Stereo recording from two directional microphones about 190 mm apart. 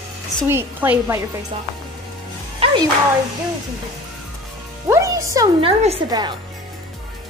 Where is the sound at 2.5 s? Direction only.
30° right (ahead or behind).